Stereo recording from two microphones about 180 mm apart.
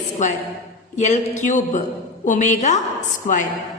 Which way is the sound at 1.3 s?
45° left (ahead or behind).